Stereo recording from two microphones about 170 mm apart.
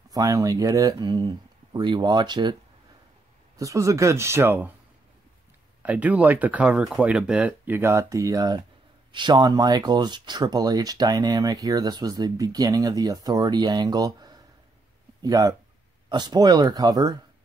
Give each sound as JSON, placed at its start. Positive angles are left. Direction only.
{"t": 0.1, "sound": "speech", "side_deg": -20}
{"t": 3.5, "sound": "speech", "side_deg": -20}
{"t": 5.8, "sound": "speech", "side_deg": -10}